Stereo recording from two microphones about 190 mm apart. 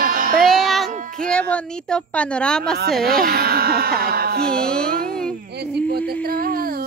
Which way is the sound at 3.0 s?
50° right (ahead or behind).